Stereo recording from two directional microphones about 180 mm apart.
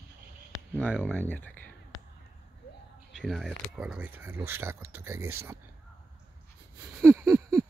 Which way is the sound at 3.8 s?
10° right (ahead or behind).